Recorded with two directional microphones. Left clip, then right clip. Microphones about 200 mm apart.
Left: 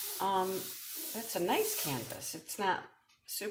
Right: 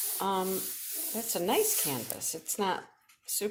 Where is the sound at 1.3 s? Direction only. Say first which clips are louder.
Right 3 dB; 45° right (ahead or behind).